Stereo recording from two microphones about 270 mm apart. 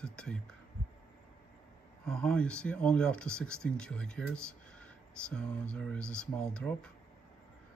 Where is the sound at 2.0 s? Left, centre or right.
Centre.